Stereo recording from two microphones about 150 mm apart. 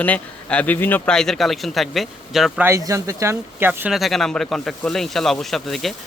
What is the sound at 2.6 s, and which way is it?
Speech, 20° right (ahead or behind).